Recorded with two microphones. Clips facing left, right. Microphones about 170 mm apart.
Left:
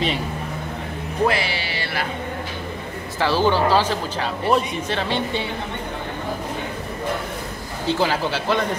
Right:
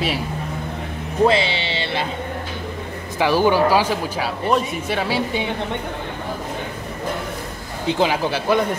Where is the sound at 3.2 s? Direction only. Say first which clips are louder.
Right 3 dB; 15° right (ahead or behind).